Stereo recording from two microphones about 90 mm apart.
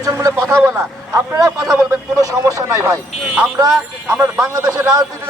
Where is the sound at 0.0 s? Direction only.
40° right (ahead or behind).